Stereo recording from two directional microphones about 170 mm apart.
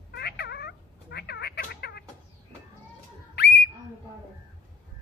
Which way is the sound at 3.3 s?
75° left (ahead or behind).